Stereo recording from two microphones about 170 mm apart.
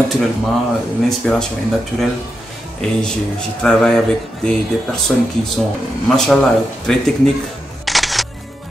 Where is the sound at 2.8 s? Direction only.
5° left (ahead or behind).